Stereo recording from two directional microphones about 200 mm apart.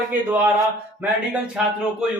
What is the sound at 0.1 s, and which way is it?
Speech, 10° right (ahead or behind).